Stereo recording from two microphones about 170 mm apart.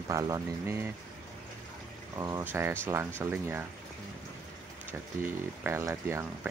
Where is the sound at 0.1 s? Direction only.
20° right (ahead or behind).